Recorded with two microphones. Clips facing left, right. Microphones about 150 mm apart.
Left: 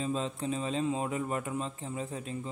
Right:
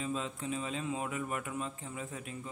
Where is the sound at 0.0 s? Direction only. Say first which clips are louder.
Left 4 dB; 35° left (ahead or behind).